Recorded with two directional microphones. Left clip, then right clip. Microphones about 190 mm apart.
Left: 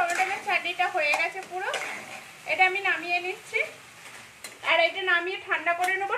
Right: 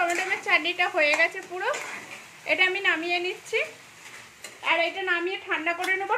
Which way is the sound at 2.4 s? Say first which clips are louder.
Right 1 dB; 55° right (ahead or behind).